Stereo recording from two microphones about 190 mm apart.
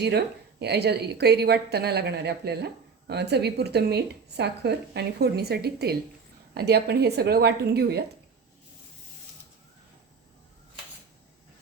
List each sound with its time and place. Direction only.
0.6 s a woman's voice: 60° right (ahead or behind)